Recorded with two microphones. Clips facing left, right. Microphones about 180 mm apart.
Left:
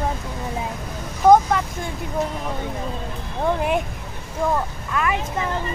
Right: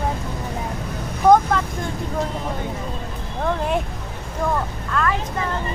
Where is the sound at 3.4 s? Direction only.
10° left (ahead or behind).